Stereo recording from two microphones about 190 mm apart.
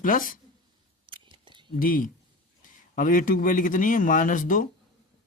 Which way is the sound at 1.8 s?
45° left (ahead or behind).